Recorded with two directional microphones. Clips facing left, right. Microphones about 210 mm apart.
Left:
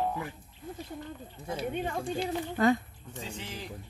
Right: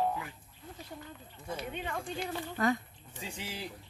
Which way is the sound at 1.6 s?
40° left (ahead or behind).